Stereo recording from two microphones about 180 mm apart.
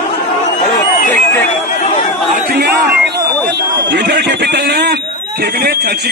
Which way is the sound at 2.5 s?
60° right (ahead or behind).